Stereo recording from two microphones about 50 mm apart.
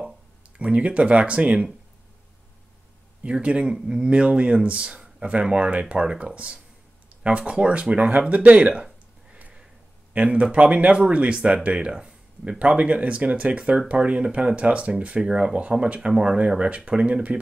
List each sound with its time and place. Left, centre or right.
0.6 s speech: right
3.3 s speech: right
10.1 s speech: right